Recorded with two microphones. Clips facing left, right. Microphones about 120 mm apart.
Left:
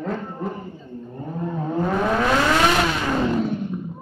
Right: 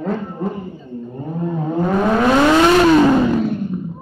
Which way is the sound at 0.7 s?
10° right (ahead or behind).